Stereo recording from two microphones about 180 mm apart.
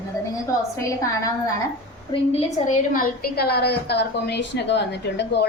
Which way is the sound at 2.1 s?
35° left (ahead or behind).